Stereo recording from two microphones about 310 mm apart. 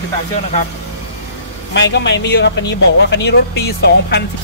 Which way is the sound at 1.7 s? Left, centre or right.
Left.